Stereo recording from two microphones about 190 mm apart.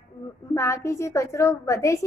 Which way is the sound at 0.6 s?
15° left (ahead or behind).